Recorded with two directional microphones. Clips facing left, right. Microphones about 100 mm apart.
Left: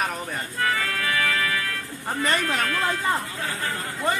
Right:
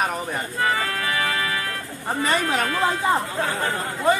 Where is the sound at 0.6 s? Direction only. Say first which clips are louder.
Right 2 dB; 25° right (ahead or behind).